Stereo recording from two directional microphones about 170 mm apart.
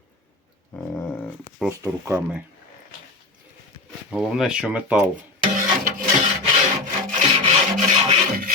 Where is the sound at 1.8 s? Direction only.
15° right (ahead or behind).